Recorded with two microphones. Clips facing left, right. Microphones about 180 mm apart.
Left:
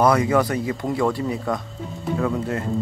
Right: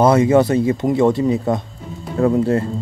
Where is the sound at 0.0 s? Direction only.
25° right (ahead or behind).